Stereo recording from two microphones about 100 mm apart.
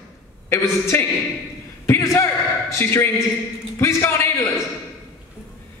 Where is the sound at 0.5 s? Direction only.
25° left (ahead or behind).